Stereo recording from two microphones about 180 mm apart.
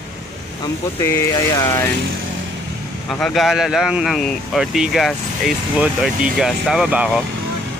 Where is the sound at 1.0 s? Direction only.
15° left (ahead or behind).